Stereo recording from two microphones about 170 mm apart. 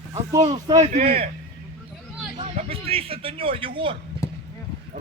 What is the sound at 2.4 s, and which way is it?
Speech, 35° right (ahead or behind).